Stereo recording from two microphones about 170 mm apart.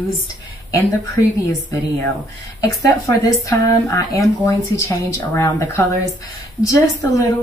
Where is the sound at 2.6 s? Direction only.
20° left (ahead or behind).